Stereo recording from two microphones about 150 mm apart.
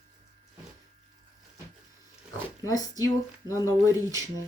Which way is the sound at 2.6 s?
20° left (ahead or behind).